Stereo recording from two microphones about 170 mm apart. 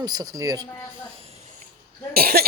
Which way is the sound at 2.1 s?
65° right (ahead or behind).